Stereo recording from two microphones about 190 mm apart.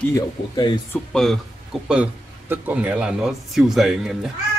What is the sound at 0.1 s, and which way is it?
Speech, 25° left (ahead or behind).